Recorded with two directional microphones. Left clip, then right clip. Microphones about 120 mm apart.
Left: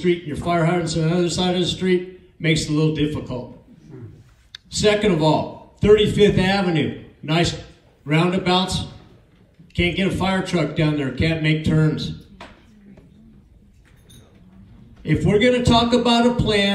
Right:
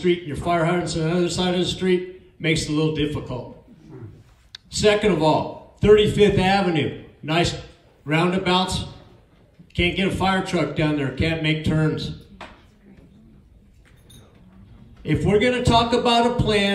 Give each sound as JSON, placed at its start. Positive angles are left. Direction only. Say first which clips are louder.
{"t": 0.0, "sound": "a man's voice", "louder": "left 1 dB", "side_deg": -25}
{"t": 4.6, "sound": "a man's voice", "louder": "even", "side_deg": -25}
{"t": 15.0, "sound": "a man's voice", "louder": "left 2 dB", "side_deg": -25}